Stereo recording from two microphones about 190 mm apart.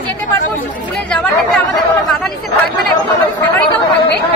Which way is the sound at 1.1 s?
5° left (ahead or behind).